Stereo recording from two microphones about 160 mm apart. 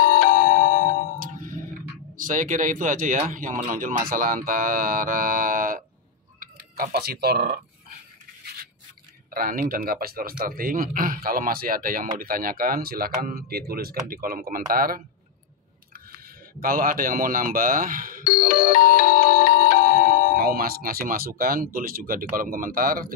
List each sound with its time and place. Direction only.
0.0 s music: 60° left (ahead or behind)
1.2 s ding: 55° right (ahead or behind)
2.1 s speech: 55° right (ahead or behind); by 7.6 s 80° right
9.3 s speech: 65° right (ahead or behind)
16.1 s speech: 65° right (ahead or behind)
18.2 s music: 65° left (ahead or behind)
20.3 s speech: 70° right (ahead or behind)